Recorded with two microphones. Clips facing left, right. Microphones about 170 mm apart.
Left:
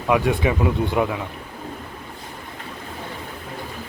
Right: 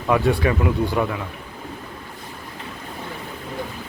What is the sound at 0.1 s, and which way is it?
Speech, 15° left (ahead or behind).